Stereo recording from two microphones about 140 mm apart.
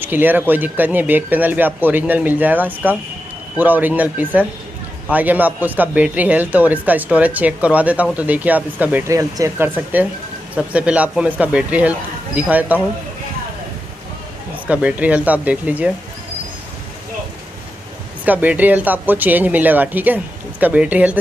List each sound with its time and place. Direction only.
0.0 s a man's voice: 15° right (ahead or behind)
9.1 s speech: 25° right (ahead or behind)
10.5 s a man's voice: 10° right (ahead or behind)
14.7 s a man's voice: 10° right (ahead or behind)
18.2 s a man's voice: 10° right (ahead or behind)